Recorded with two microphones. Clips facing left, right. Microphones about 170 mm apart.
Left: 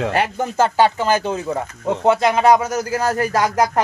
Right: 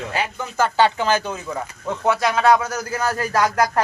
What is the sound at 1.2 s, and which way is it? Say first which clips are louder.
Speech: left 5 dB; 30° left (ahead or behind).